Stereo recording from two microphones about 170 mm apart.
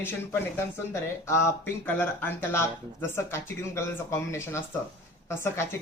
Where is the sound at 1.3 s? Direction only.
15° left (ahead or behind).